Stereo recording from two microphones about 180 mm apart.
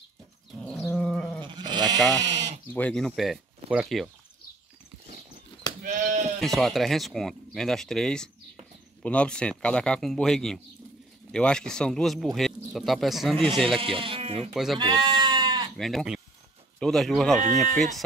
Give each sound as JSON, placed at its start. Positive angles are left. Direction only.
{"t": 0.8, "sound": "goat", "side_deg": 5}
{"t": 1.4, "sound": "sheep", "side_deg": -25}
{"t": 2.2, "sound": "sheep", "side_deg": -75}
{"t": 2.7, "sound": "speech", "side_deg": 5}
{"t": 5.8, "sound": "sheep", "side_deg": -45}
{"t": 6.4, "sound": "speech", "side_deg": 0}
{"t": 13.7, "sound": "speech", "side_deg": -30}
{"t": 14.5, "sound": "speech", "side_deg": 0}
{"t": 14.8, "sound": "goat", "side_deg": -25}
{"t": 15.7, "sound": "speech", "side_deg": 0}